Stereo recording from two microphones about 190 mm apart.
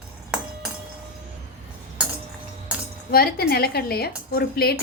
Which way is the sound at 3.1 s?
55° left (ahead or behind).